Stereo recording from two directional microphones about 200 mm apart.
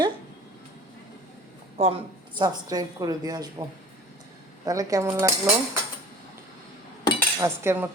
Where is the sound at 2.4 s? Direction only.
20° right (ahead or behind).